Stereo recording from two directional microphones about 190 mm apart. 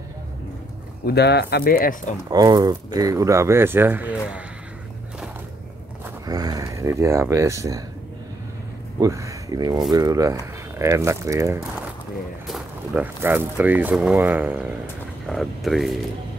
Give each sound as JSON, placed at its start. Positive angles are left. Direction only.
{"t": 1.0, "sound": "speech", "side_deg": 60}
{"t": 2.2, "sound": "speech", "side_deg": -20}
{"t": 6.2, "sound": "speech", "side_deg": -20}
{"t": 9.0, "sound": "speech", "side_deg": -15}
{"t": 12.4, "sound": "speech", "side_deg": -5}